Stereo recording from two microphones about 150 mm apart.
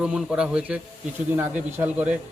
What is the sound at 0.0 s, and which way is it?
Speech, 5° right (ahead or behind).